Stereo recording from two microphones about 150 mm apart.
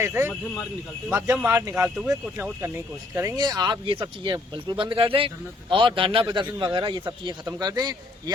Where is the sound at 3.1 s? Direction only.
20° right (ahead or behind).